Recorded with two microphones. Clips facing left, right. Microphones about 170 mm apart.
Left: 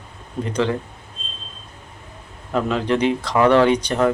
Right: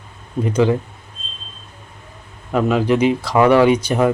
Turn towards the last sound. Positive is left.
turn(degrees=-10)  # may be behind; listen again after turning